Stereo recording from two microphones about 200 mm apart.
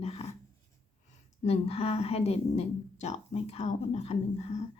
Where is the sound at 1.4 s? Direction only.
30° left (ahead or behind).